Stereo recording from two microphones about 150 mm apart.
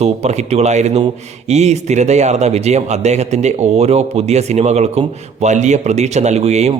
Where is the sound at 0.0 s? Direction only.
45° right (ahead or behind).